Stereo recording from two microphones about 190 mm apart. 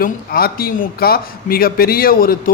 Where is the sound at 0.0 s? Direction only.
50° left (ahead or behind).